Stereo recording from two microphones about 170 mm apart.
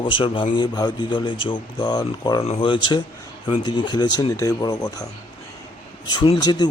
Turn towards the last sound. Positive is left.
turn(degrees=25)  # may be behind; listen again after turning